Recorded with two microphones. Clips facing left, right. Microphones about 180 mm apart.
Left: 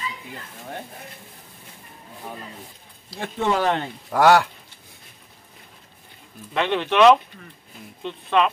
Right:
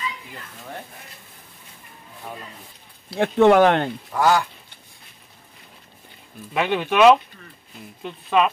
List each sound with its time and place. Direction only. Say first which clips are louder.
3.1 s speech: right 9 dB; 65° right (ahead or behind)
4.1 s speech: left 4 dB; 70° left (ahead or behind)
6.5 s speech: even; 10° right (ahead or behind)